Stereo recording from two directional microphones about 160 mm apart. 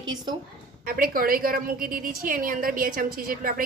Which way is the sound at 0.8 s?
65° right (ahead or behind).